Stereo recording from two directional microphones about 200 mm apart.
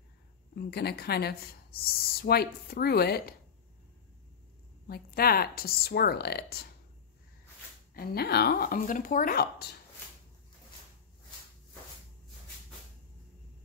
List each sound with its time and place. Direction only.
0.6 s speech: 50° left (ahead or behind)
4.8 s speech: 50° left (ahead or behind)
7.9 s speech: 50° left (ahead or behind)